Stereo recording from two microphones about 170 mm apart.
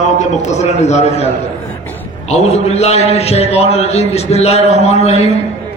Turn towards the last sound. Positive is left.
turn(degrees=40)  # may be behind; listen again after turning